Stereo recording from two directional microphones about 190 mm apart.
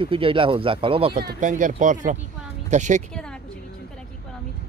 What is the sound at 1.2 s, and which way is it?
Speech, 50° right (ahead or behind).